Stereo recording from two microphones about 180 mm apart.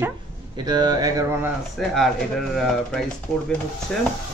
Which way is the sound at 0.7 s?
20° right (ahead or behind).